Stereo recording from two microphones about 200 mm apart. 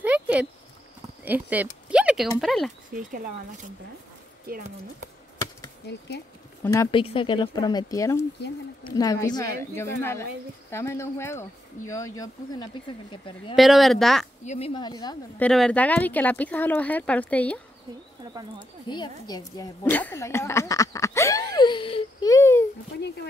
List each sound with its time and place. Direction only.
0.0 s a sound: 5° right (ahead or behind)
1.2 s speech: 10° right (ahead or behind)
2.9 s speech: 45° right (ahead or behind)
4.5 s speech: 45° right (ahead or behind)
5.9 s speech: 55° left (ahead or behind)
6.6 s speech: 15° left (ahead or behind)
6.9 s speech: 25° left (ahead or behind)
13.6 s speech: centre (ahead or behind)
14.4 s speech: 35° left (ahead or behind)
15.3 s speech: 5° left (ahead or behind)
18.6 s a woman's voice: 25° left (ahead or behind)
22.3 s a sound: 15° left (ahead or behind)
22.9 s a sound: 55° left (ahead or behind)